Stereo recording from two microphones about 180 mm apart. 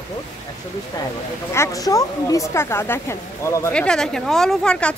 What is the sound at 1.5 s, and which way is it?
Speech, 15° left (ahead or behind).